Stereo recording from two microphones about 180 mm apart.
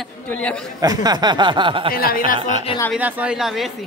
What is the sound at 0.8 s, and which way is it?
Speech, 20° right (ahead or behind).